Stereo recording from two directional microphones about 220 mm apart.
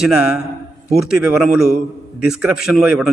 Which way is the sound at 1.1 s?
Centre (ahead or behind).